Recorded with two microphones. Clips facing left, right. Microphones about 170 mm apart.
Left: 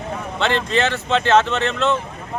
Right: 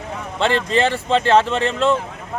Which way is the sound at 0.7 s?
35° right (ahead or behind).